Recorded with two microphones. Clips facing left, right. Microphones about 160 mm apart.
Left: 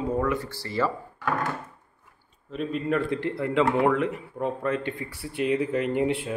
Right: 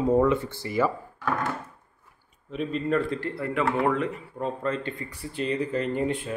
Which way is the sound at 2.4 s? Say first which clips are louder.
Even; centre (ahead or behind).